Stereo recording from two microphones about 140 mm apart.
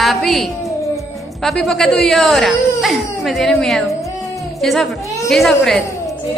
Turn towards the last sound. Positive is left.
turn(degrees=0)  # may be behind; listen again after turning